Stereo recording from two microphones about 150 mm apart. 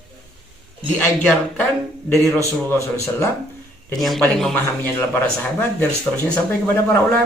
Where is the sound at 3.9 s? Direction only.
Centre (ahead or behind).